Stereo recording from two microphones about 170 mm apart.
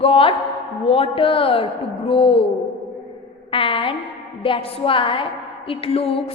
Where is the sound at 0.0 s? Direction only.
35° left (ahead or behind).